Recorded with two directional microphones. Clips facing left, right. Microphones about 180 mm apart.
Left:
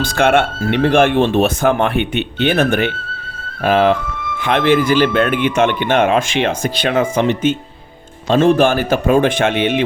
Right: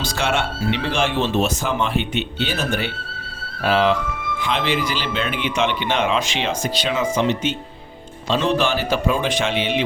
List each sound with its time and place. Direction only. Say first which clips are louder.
0.0 s speech: left 8 dB; 55° left (ahead or behind)